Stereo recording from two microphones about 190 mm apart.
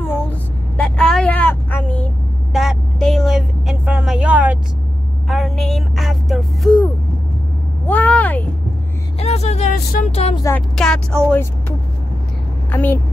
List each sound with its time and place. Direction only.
0.0 s vehicle: 5° left (ahead or behind)
5.3 s speech: centre (ahead or behind)
7.8 s vehicle: 10° left (ahead or behind)
9.2 s a sound: 35° left (ahead or behind)
10.4 s speech: 5° left (ahead or behind)
12.7 s speech: 10° left (ahead or behind)